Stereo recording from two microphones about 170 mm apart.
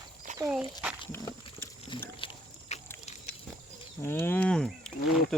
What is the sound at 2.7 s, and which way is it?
Pig, 40° left (ahead or behind).